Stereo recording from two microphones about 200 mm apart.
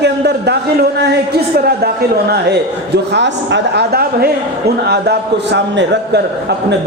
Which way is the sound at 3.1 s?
60° right (ahead or behind).